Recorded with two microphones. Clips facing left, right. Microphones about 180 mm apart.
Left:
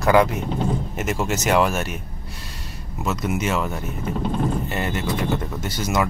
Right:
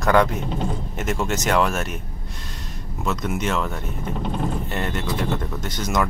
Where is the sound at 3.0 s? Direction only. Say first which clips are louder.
Left 1 dB; 5° left (ahead or behind).